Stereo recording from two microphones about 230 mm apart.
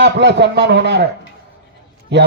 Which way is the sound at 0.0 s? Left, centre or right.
Right.